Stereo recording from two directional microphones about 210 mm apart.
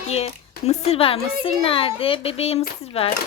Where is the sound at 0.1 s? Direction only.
30° left (ahead or behind).